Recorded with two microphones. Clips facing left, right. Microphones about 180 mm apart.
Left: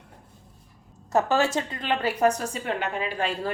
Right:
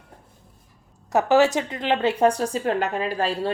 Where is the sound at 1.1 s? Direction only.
20° right (ahead or behind).